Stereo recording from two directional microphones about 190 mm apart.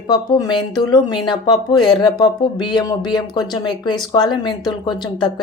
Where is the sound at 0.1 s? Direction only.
20° left (ahead or behind).